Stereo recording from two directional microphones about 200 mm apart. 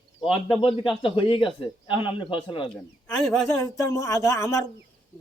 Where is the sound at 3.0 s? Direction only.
Centre (ahead or behind).